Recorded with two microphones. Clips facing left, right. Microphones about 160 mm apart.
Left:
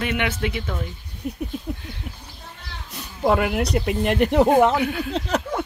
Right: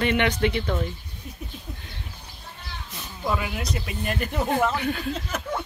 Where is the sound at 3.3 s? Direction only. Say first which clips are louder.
Left 8 dB; 65° left (ahead or behind).